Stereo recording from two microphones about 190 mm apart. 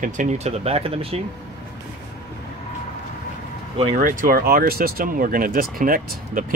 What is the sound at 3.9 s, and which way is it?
Speech, 45° right (ahead or behind).